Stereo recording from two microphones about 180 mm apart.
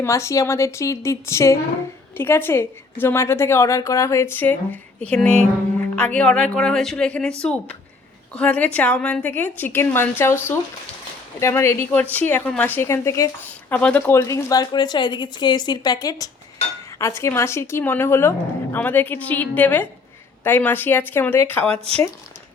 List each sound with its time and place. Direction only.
0.0 s a woman's voice: 15° left (ahead or behind)
21.7 s speech: 35° right (ahead or behind)